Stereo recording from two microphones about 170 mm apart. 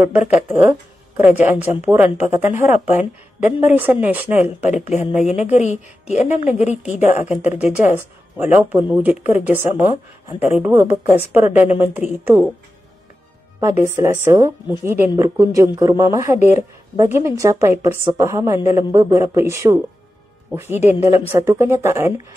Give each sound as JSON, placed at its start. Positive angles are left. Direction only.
{"t": 0.0, "sound": "a woman's voice", "side_deg": -10}
{"t": 5.4, "sound": "speech", "side_deg": 45}
{"t": 6.3, "sound": "a woman's voice", "side_deg": -10}
{"t": 13.6, "sound": "a woman's voice", "side_deg": -15}